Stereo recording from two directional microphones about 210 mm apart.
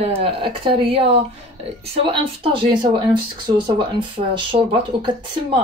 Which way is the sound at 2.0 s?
25° right (ahead or behind).